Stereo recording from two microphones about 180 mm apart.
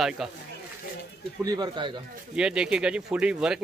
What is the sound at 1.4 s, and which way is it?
Speech, 20° right (ahead or behind).